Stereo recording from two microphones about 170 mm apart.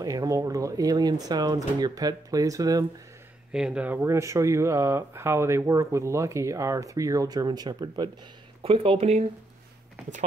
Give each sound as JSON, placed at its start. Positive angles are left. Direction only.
{"t": 0.0, "sound": "speech", "side_deg": -20}
{"t": 3.5, "sound": "speech", "side_deg": -5}
{"t": 8.6, "sound": "speech", "side_deg": -35}